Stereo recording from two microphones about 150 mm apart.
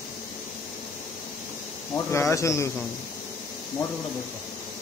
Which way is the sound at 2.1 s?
20° left (ahead or behind).